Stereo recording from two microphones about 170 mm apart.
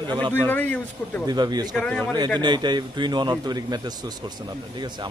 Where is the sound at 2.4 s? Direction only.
25° right (ahead or behind).